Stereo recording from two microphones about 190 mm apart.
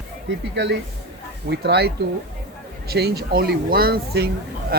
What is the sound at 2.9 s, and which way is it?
Speech, 55° right (ahead or behind).